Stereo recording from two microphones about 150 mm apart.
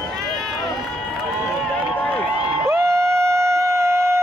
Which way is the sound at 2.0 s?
10° left (ahead or behind).